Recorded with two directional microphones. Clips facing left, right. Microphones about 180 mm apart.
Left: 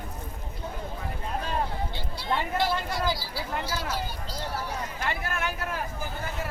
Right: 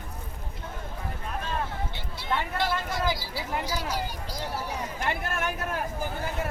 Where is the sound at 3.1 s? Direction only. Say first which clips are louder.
Even; 15° right (ahead or behind).